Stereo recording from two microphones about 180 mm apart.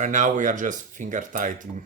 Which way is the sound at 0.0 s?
45° right (ahead or behind).